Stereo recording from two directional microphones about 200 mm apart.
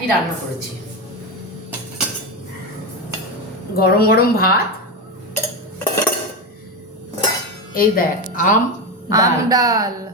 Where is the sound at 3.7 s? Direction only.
50° left (ahead or behind).